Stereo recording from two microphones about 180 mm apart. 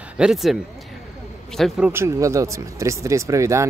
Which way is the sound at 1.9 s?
15° right (ahead or behind).